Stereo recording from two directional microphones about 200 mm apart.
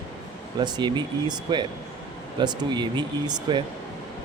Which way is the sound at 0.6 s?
20° right (ahead or behind).